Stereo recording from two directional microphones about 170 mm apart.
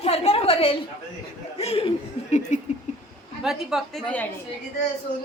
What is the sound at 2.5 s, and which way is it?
Rodents, 45° left (ahead or behind).